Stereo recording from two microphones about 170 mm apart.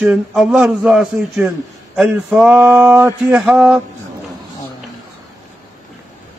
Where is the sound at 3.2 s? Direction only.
5° right (ahead or behind).